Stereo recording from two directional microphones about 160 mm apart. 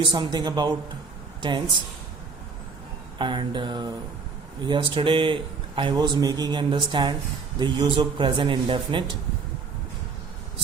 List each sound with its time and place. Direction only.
0.0 s speech: 30° right (ahead or behind)
3.2 s speech: 30° right (ahead or behind)